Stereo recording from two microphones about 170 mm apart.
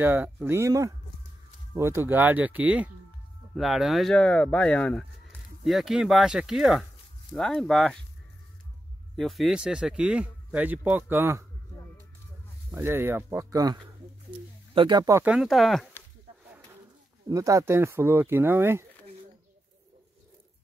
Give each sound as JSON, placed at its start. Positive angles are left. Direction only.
{"t": 0.0, "sound": "speech", "side_deg": -10}
{"t": 9.1, "sound": "speech", "side_deg": 0}
{"t": 12.7, "sound": "speech", "side_deg": -15}
{"t": 15.2, "sound": "speech", "side_deg": -5}
{"t": 17.3, "sound": "speech", "side_deg": -20}